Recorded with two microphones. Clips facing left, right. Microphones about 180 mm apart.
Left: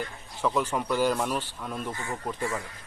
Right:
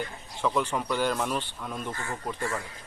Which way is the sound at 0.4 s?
5° left (ahead or behind).